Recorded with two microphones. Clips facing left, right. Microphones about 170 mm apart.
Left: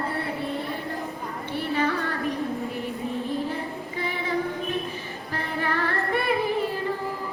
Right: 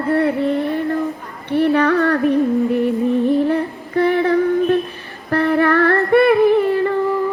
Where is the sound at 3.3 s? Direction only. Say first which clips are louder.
Right 12 dB; 60° right (ahead or behind).